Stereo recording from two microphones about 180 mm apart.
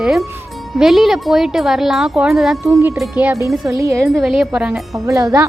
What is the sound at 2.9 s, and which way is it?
Speech, 5° right (ahead or behind).